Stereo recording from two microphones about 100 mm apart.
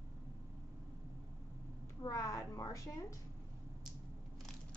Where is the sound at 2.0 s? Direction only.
35° left (ahead or behind).